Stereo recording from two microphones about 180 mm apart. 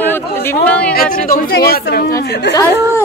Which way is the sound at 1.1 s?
50° left (ahead or behind).